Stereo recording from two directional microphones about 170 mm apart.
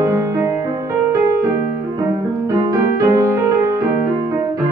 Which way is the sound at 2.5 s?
20° right (ahead or behind).